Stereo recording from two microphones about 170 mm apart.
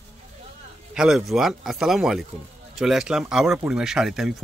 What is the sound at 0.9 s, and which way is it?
Speech, 5° right (ahead or behind).